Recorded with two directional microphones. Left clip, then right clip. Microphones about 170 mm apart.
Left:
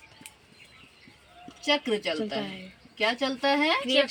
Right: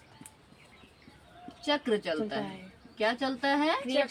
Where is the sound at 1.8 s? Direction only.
5° right (ahead or behind).